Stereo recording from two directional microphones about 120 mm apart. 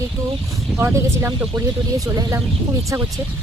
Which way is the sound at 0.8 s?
20° right (ahead or behind).